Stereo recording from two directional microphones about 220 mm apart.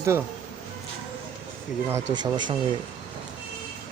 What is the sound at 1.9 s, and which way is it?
Speech, 20° right (ahead or behind).